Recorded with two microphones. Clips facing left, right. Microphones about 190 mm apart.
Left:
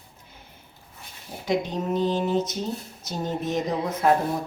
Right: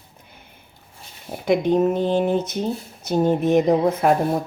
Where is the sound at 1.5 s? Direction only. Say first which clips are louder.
Right 8 dB; 55° right (ahead or behind).